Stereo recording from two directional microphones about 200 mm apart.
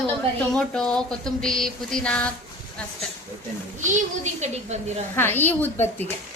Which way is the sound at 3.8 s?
40° right (ahead or behind).